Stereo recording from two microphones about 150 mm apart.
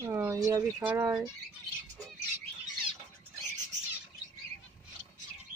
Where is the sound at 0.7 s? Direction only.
10° right (ahead or behind).